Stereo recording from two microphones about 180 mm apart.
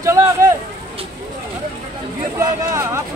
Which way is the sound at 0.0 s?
15° right (ahead or behind).